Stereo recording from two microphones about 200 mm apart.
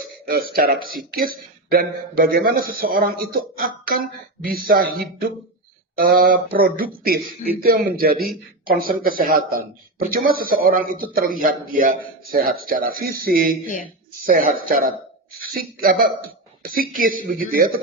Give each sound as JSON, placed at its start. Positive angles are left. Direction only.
{"t": 0.3, "sound": "speech", "side_deg": -50}